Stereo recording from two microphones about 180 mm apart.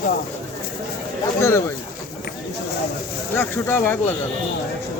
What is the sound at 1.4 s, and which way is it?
Speech, 15° left (ahead or behind).